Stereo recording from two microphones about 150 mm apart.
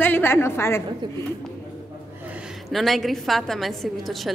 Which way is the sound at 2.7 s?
Centre (ahead or behind).